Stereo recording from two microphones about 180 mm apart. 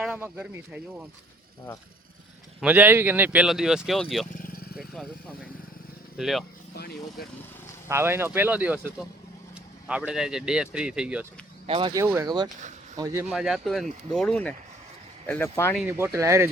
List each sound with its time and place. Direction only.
0.0 s speech: 5° right (ahead or behind)
2.6 s speech: 10° right (ahead or behind)
4.3 s vehicle: 50° left (ahead or behind)
4.8 s speech: centre (ahead or behind)
6.7 s speech: 60° left (ahead or behind)
7.9 s speech: 15° right (ahead or behind)
11.6 s speech: 30° right (ahead or behind)
13.3 s speech: centre (ahead or behind); by 15.7 s 15° left (ahead or behind)
15.7 s speech: 5° right (ahead or behind)
16.1 s speech: 15° right (ahead or behind)